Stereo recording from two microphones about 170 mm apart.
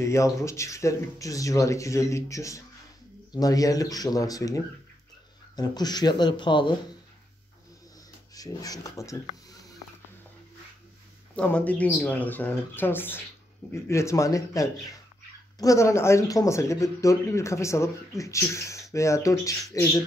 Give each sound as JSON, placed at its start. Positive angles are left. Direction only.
{"t": 0.0, "sound": "speech", "side_deg": 15}
{"t": 5.6, "sound": "speech", "side_deg": 25}
{"t": 8.4, "sound": "speech", "side_deg": 20}
{"t": 11.3, "sound": "speech", "side_deg": 10}